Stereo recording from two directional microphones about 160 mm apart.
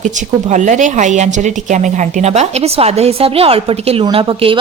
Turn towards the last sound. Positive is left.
turn(degrees=-35)  # may be behind; listen again after turning